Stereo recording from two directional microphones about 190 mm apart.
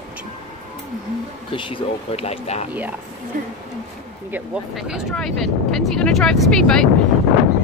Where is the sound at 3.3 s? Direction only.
45° right (ahead or behind).